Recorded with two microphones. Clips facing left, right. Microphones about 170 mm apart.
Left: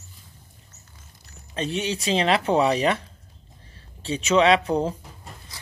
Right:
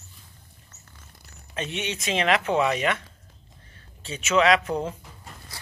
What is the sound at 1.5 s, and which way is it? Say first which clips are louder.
Speech: left 4 dB; 35° left (ahead or behind).